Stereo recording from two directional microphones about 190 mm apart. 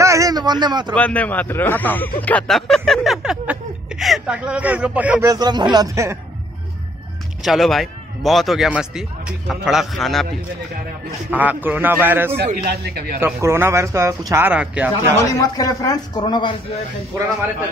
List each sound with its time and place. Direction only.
0.0 s a sound: 15° right (ahead or behind)
0.9 s speech: 5° left (ahead or behind)
2.1 s a sound: 10° left (ahead or behind); by 5.3 s 10° right (ahead or behind)
5.3 s speech: 20° right (ahead or behind)
7.4 s a man's voice: centre (ahead or behind)
11.2 s speech: 10° right (ahead or behind)
12.6 s speech: 55° right (ahead or behind)
13.2 s speech: 15° right (ahead or behind)
15.1 s speech: 15° left (ahead or behind)